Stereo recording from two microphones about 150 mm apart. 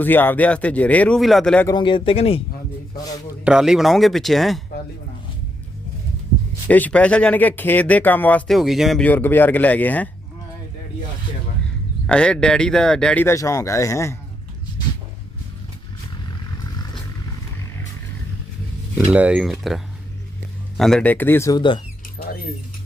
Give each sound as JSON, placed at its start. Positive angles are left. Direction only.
{"t": 0.0, "sound": "speech", "side_deg": 15}
{"t": 1.6, "sound": "speech", "side_deg": 30}
{"t": 3.4, "sound": "speech", "side_deg": -5}
{"t": 6.7, "sound": "speech", "side_deg": 10}
{"t": 8.5, "sound": "speech", "side_deg": 0}
{"t": 9.0, "sound": "speech", "side_deg": 15}
{"t": 12.0, "sound": "speech", "side_deg": 5}
{"t": 13.2, "sound": "speech", "side_deg": 20}
{"t": 18.9, "sound": "speech", "side_deg": -10}